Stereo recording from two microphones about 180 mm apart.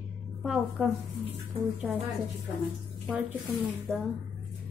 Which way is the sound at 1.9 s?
5° right (ahead or behind).